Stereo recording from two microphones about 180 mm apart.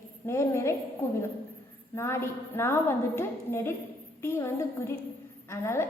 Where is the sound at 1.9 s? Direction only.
15° left (ahead or behind).